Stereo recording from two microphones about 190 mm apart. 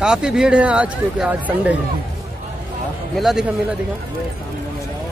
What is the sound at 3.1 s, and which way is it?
Speech, centre (ahead or behind).